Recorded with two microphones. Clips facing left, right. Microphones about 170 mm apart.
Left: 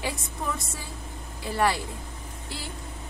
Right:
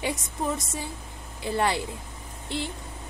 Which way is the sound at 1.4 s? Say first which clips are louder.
Even; 25° right (ahead or behind).